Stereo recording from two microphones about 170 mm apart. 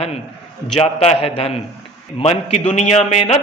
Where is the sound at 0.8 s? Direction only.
35° left (ahead or behind).